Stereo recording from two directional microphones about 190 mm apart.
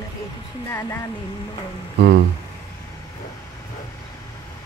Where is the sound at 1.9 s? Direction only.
60° right (ahead or behind).